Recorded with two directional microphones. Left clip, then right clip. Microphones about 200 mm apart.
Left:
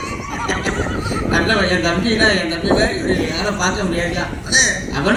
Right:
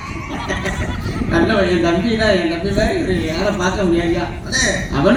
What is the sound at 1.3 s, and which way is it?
A man's voice, 45° right (ahead or behind).